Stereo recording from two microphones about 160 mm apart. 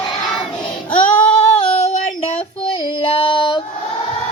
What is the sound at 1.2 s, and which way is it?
Female singing, 45° left (ahead or behind).